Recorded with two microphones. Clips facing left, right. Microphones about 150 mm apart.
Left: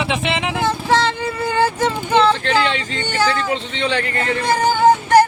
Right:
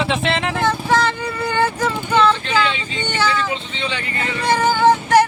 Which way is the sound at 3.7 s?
75° left (ahead or behind).